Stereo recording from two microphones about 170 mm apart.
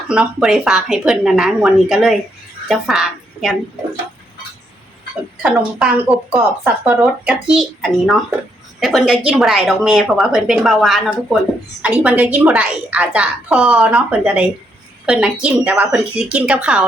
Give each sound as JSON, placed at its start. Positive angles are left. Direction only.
{"t": 0.1, "sound": "a woman's voice", "side_deg": -5}
{"t": 5.4, "sound": "a woman's voice", "side_deg": -5}